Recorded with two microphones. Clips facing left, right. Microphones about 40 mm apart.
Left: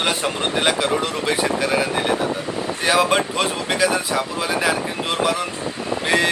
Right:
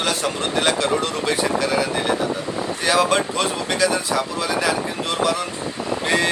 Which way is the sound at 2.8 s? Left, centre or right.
Centre.